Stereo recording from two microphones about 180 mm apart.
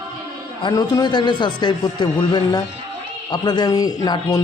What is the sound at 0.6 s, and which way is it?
Speech, 20° left (ahead or behind).